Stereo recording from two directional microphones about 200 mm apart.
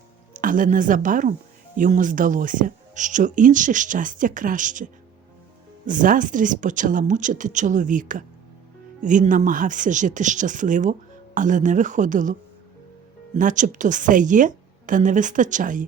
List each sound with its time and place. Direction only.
0.3 s speech: 45° right (ahead or behind)